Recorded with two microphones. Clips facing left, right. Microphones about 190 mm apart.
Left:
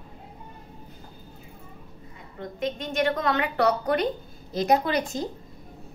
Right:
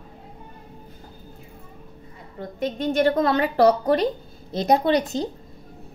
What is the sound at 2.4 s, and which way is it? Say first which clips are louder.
A woman's voice: right 3 dB; 35° right (ahead or behind).